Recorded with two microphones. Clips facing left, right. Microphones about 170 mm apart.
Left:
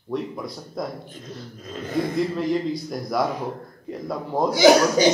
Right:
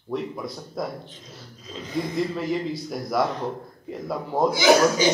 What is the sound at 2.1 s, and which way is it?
A man's voice, centre (ahead or behind).